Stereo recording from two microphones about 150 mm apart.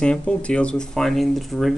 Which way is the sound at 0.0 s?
5° left (ahead or behind).